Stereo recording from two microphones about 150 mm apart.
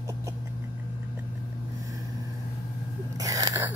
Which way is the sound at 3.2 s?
25° right (ahead or behind).